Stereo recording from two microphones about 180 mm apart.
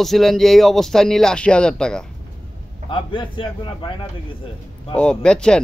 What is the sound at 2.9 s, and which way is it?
A man's voice, 25° left (ahead or behind).